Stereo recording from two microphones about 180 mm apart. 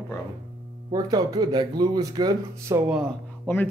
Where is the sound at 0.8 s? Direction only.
20° right (ahead or behind).